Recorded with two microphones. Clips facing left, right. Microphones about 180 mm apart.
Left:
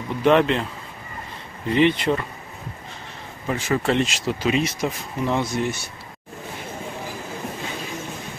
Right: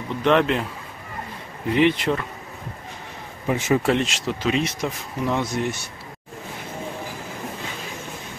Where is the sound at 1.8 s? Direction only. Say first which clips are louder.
Left 1 dB; centre (ahead or behind).